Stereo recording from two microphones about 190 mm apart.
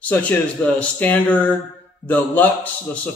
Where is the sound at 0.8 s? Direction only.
10° left (ahead or behind).